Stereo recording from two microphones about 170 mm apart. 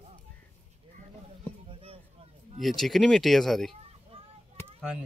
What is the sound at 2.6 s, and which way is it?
Speech, centre (ahead or behind).